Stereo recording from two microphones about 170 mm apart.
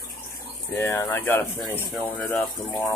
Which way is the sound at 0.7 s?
15° left (ahead or behind).